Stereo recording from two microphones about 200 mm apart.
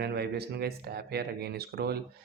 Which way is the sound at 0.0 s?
55° right (ahead or behind).